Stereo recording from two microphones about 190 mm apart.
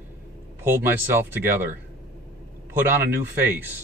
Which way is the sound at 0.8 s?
10° right (ahead or behind).